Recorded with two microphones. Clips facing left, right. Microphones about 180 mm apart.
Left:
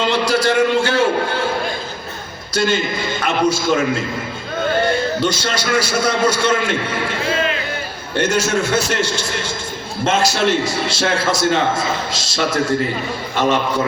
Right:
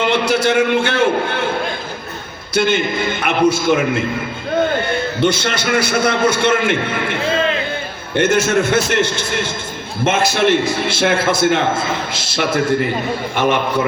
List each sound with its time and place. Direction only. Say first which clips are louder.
0.0 s a sound: right 1 dB; 55° right (ahead or behind)
2.6 s a man's voice: right 2 dB; 55° right (ahead or behind)
5.2 s a man's voice: right 3 dB; 55° right (ahead or behind)
13.4 s a man's voice: even; 10° right (ahead or behind)